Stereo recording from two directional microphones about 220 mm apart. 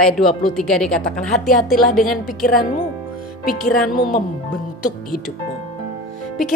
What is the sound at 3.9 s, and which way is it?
Speech, 40° left (ahead or behind).